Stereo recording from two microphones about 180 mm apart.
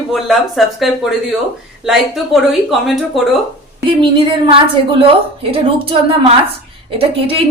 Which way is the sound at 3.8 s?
30° right (ahead or behind).